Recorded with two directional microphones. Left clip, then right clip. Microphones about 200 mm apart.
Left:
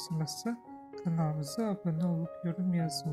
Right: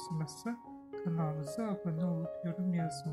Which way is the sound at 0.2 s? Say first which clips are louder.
Left 4 dB; 20° left (ahead or behind).